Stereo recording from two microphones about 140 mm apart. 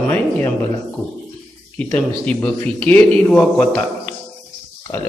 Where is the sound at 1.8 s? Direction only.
10° left (ahead or behind).